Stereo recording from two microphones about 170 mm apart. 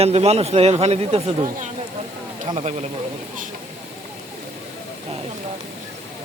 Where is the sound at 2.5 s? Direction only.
40° right (ahead or behind).